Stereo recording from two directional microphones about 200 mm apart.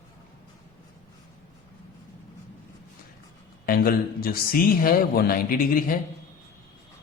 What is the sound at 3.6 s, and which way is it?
A man's voice, 45° left (ahead or behind).